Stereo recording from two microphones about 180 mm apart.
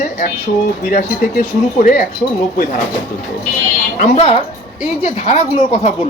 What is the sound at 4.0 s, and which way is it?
Speech, 35° left (ahead or behind).